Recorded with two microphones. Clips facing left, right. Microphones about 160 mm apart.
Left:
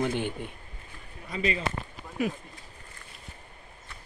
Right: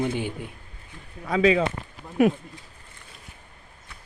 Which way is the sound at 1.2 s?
90° right.